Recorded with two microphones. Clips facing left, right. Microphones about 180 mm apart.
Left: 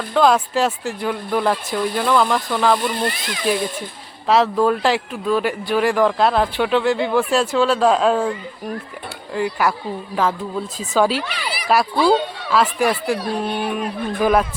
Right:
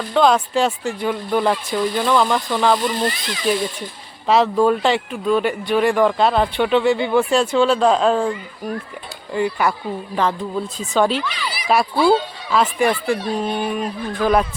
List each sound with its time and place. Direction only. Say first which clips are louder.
0.1 s speech: even; centre (ahead or behind)
3.1 s speech: even; 55° left (ahead or behind)
3.4 s speech: even; centre (ahead or behind)
9.3 s speech: right 1 dB; centre (ahead or behind)
11.2 s a sound: even; 60° left (ahead or behind)
11.7 s speech: even; centre (ahead or behind)
13.3 s speech: right 1 dB; 60° left (ahead or behind)
14.2 s speech: even; 5° left (ahead or behind)